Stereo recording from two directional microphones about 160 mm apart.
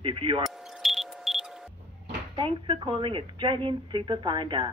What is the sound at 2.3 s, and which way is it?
Speech, 35° right (ahead or behind).